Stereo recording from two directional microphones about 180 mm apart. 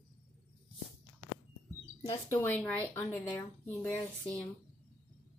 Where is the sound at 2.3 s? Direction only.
10° left (ahead or behind).